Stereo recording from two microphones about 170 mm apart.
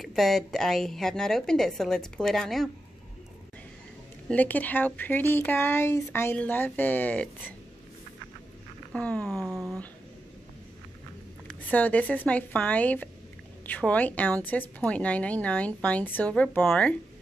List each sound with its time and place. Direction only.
0.0 s a woman's voice: centre (ahead or behind)
4.3 s a woman's voice: 10° left (ahead or behind)
8.9 s a woman's voice: 5° left (ahead or behind)
9.4 s a sound: 20° right (ahead or behind)
11.4 s a woman's voice: 10° left (ahead or behind)